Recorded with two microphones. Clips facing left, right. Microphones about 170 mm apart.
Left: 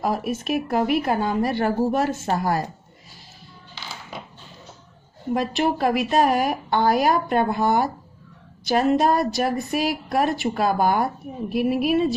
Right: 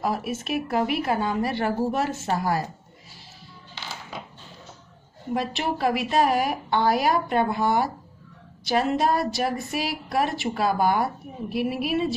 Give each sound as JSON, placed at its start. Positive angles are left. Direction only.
{"t": 0.0, "sound": "a woman's voice", "side_deg": 45}
{"t": 5.3, "sound": "a woman's voice", "side_deg": 45}